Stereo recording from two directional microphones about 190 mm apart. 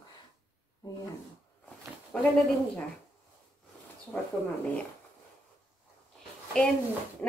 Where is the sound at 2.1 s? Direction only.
5° left (ahead or behind).